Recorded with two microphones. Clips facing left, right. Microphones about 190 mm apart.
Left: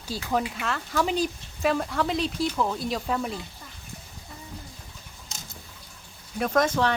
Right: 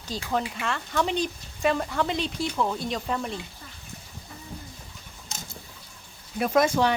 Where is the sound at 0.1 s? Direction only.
5° left (ahead or behind).